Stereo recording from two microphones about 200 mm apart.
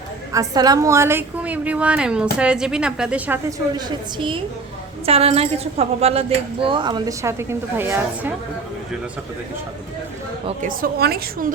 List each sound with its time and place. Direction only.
0.3 s a woman's voice: 20° right (ahead or behind)
3.8 s a woman's voice: 20° right (ahead or behind)
10.4 s a woman's voice: 40° right (ahead or behind)